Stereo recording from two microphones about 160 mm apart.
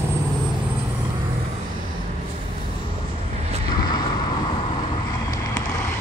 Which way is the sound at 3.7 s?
25° left (ahead or behind).